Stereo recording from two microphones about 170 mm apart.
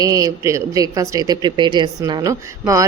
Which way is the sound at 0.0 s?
20° right (ahead or behind).